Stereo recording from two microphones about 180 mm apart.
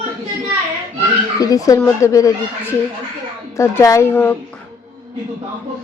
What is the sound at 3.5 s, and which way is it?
Speech, 15° left (ahead or behind).